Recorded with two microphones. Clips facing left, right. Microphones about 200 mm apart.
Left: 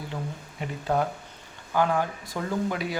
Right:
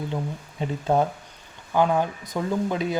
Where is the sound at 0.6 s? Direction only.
25° right (ahead or behind).